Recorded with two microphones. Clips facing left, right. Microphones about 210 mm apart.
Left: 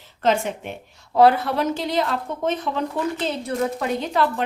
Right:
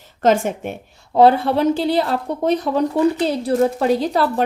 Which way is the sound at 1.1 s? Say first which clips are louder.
Right 3 dB; 30° right (ahead or behind).